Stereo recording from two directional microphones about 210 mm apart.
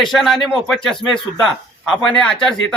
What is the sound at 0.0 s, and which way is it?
Speech, centre (ahead or behind).